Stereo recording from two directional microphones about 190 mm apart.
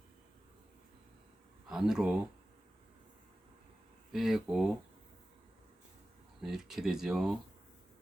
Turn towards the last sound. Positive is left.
turn(degrees=0)  # may be behind; listen again after turning